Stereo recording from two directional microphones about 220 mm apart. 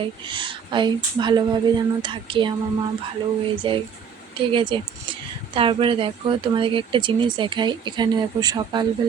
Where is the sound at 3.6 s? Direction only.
25° right (ahead or behind).